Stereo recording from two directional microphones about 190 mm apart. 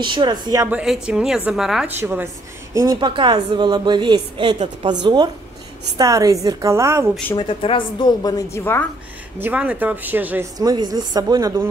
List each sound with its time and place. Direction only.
0.0 s a woman's voice: 25° right (ahead or behind)
0.7 s a woman's voice: 5° right (ahead or behind)
2.7 s a woman's voice: 15° right (ahead or behind)
7.3 s a woman's voice: 25° left (ahead or behind)
9.4 s a woman's voice: 5° right (ahead or behind)
10.6 s a woman's voice: 20° right (ahead or behind)